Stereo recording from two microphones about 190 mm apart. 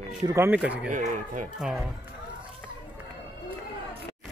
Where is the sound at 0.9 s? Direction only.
40° right (ahead or behind).